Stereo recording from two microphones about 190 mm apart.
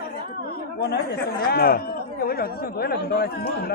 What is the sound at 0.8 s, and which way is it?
Speech, 60° left (ahead or behind).